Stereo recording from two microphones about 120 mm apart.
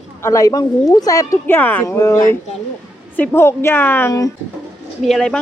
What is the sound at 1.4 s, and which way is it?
A woman's voice, 15° left (ahead or behind).